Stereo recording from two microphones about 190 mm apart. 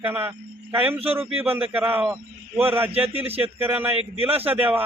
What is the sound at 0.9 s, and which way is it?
Speech, 30° right (ahead or behind).